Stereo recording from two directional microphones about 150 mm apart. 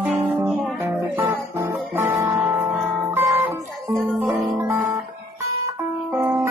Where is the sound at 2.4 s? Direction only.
10° right (ahead or behind).